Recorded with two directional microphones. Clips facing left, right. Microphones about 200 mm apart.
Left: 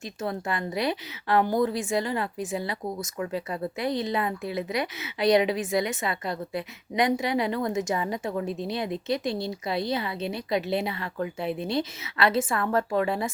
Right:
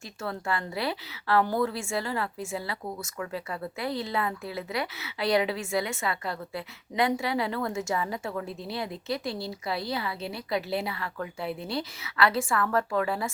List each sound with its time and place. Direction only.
0.2 s a woman's voice: 20° left (ahead or behind)